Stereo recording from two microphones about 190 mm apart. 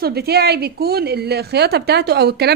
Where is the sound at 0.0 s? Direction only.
55° right (ahead or behind).